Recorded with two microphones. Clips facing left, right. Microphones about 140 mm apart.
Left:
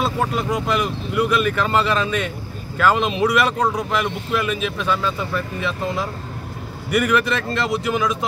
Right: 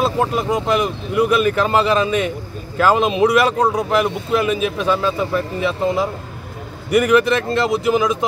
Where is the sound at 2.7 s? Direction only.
35° right (ahead or behind).